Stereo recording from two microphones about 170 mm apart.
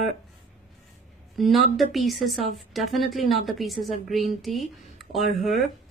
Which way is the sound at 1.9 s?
Centre (ahead or behind).